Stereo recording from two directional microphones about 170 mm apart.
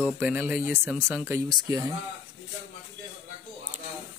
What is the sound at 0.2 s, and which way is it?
Speech, 10° right (ahead or behind).